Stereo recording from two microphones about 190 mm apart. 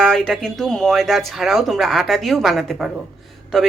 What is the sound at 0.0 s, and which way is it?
Speech, 5° left (ahead or behind).